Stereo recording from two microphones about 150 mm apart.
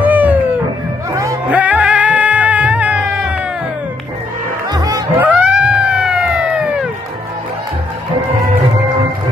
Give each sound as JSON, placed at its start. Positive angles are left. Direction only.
{"t": 0.0, "sound": "music", "side_deg": -10}
{"t": 4.6, "sound": "music", "side_deg": -25}
{"t": 5.2, "sound": "cat", "side_deg": -10}